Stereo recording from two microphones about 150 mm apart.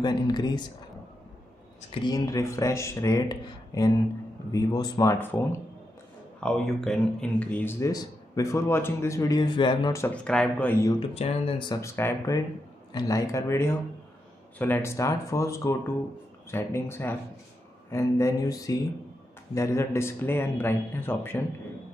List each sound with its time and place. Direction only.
0.0 s speech: 25° left (ahead or behind)
2.0 s speech: 25° left (ahead or behind)
6.4 s speech: 5° left (ahead or behind); by 9.9 s 30° left (ahead or behind)
9.9 s speech: 10° left (ahead or behind)
11.0 s speech: 40° left (ahead or behind)
11.7 s speech: 20° left (ahead or behind)